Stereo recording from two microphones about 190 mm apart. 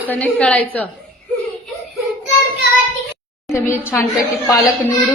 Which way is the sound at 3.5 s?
15° left (ahead or behind).